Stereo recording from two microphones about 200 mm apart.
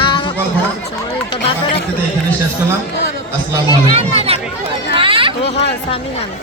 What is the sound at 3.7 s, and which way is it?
Speech, 30° right (ahead or behind).